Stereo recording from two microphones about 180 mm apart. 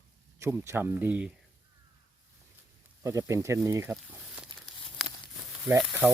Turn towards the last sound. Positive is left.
turn(degrees=-10)  # may be behind; listen again after turning